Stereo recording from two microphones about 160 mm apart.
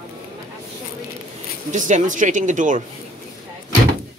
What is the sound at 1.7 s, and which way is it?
Speech, 50° right (ahead or behind).